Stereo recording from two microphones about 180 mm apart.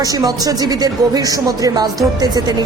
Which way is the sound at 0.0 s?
20° right (ahead or behind).